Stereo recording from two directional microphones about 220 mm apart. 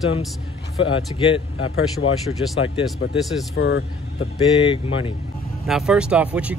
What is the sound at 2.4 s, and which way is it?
Speech, 60° left (ahead or behind).